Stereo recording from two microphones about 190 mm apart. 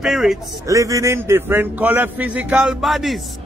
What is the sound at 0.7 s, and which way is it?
A man's voice, 15° right (ahead or behind).